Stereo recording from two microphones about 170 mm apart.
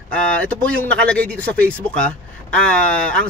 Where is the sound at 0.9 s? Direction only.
5° left (ahead or behind).